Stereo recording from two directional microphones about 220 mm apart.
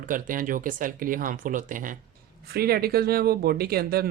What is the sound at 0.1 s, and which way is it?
Speech, 40° right (ahead or behind).